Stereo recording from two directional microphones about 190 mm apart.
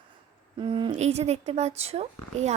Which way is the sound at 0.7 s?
25° right (ahead or behind).